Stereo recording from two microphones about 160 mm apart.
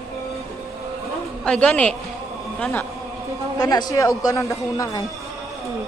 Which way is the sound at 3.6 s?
25° left (ahead or behind).